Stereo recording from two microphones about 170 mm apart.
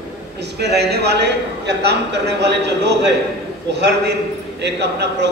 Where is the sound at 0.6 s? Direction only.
80° right.